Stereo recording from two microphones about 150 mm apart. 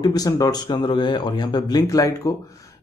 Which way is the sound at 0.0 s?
25° left (ahead or behind).